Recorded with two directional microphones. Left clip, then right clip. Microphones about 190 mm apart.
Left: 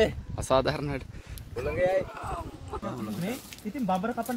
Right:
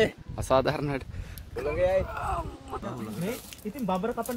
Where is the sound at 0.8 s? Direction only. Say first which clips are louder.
Right 2 dB; 20° right (ahead or behind).